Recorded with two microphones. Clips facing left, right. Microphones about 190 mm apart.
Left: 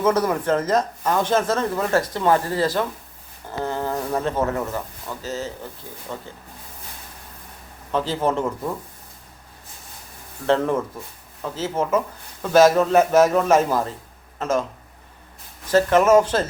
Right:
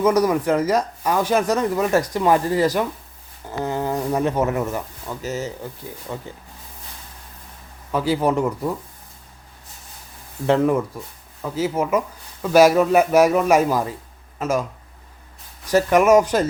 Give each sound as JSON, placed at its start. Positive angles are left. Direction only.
{"t": 0.0, "sound": "speech", "side_deg": -10}
{"t": 7.9, "sound": "speech", "side_deg": -10}
{"t": 10.4, "sound": "speech", "side_deg": -10}
{"t": 15.7, "sound": "speech", "side_deg": -15}